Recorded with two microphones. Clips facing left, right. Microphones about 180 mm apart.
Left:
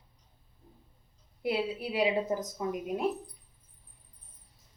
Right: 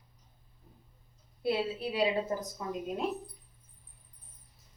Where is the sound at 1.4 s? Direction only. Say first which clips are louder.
Even; 15° left (ahead or behind).